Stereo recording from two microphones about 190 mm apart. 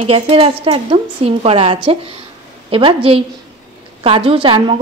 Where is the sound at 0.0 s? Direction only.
30° right (ahead or behind).